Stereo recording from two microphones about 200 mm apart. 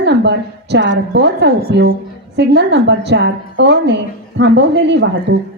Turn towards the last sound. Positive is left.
turn(degrees=-60)  # may be behind; listen again after turning